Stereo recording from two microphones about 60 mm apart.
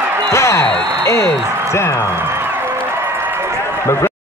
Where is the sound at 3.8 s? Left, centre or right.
Left.